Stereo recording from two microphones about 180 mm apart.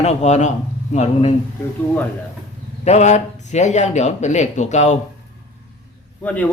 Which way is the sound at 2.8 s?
40° left (ahead or behind).